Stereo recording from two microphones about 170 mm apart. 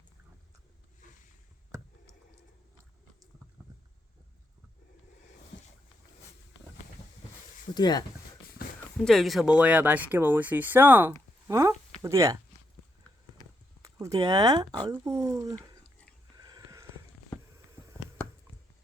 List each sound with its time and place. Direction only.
7.7 s speech: 25° left (ahead or behind)
9.0 s speech: centre (ahead or behind); by 12.4 s 20° right (ahead or behind)
13.8 s speech: 20° right (ahead or behind)
16.4 s a sound: 20° right (ahead or behind)